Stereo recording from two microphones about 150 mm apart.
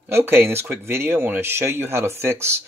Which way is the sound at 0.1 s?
15° right (ahead or behind).